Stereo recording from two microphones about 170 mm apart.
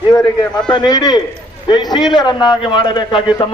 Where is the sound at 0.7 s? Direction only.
25° left (ahead or behind).